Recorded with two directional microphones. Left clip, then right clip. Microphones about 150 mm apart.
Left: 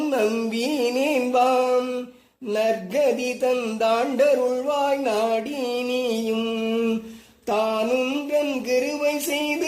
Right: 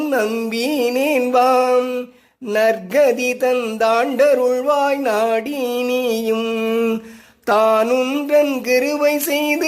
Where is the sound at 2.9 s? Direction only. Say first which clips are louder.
Right 7 dB; 45° right (ahead or behind).